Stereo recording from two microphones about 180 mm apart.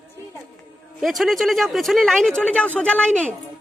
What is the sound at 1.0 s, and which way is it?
Speech, centre (ahead or behind).